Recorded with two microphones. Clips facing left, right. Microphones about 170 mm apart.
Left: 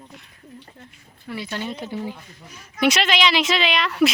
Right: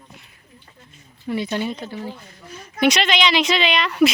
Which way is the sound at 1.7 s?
15° left (ahead or behind).